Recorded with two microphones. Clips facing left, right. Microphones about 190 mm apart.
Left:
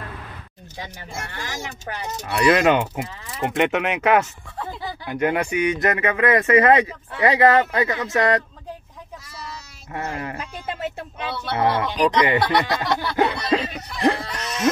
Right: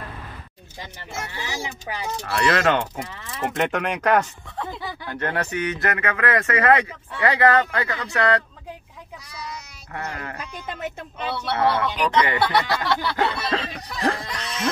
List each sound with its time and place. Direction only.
1.3 s speech: 10° right (ahead or behind)
2.2 s speech: 20° left (ahead or behind)
9.9 s speech: 25° left (ahead or behind)
11.5 s speech: 20° left (ahead or behind)